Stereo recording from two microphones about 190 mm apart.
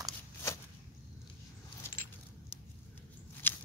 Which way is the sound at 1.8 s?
10° left (ahead or behind).